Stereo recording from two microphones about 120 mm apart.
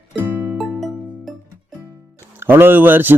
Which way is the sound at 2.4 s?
20° right (ahead or behind).